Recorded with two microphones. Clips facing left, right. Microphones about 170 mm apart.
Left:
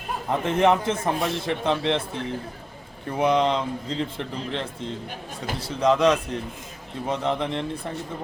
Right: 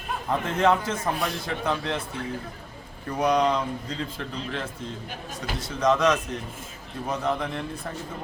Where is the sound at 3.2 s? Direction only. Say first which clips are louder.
Left 1 dB; 25° left (ahead or behind).